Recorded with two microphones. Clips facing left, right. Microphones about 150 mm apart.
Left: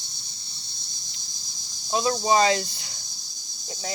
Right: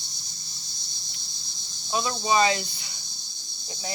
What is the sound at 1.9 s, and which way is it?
Speech, 35° left (ahead or behind).